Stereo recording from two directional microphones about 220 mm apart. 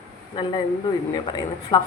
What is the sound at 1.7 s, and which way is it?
Speech, 20° left (ahead or behind).